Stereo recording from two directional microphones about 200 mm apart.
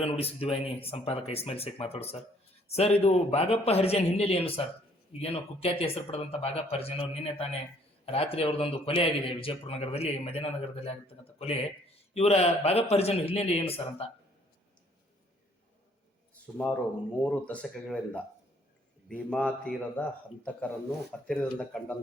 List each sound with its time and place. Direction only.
0.0 s a man's voice: 30° left (ahead or behind)
16.5 s a man's voice: 5° left (ahead or behind)